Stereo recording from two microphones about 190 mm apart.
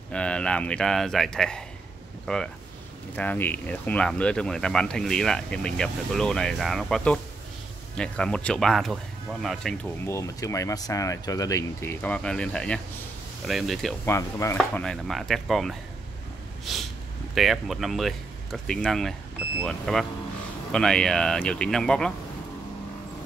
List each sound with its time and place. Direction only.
0.1 s speech: 5° left (ahead or behind)
10.0 s speech: 15° left (ahead or behind); by 13.9 s centre (ahead or behind)
14.0 s speech: 15° left (ahead or behind)
17.3 s speech: centre (ahead or behind)